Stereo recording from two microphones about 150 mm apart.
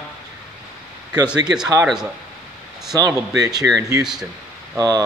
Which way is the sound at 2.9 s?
25° right (ahead or behind).